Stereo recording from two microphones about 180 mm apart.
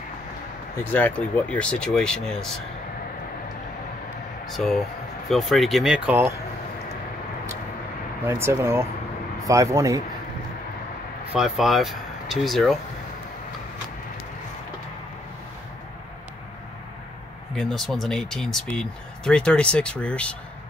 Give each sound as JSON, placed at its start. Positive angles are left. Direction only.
{"t": 0.8, "sound": "speech", "side_deg": 10}
{"t": 4.5, "sound": "speech", "side_deg": 0}
{"t": 8.3, "sound": "speech", "side_deg": -15}
{"t": 11.3, "sound": "speech", "side_deg": 0}
{"t": 17.6, "sound": "speech", "side_deg": 0}